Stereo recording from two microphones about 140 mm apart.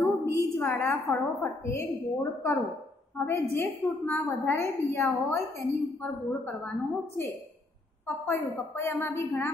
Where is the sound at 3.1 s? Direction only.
5° left (ahead or behind); by 5.6 s 20° left (ahead or behind).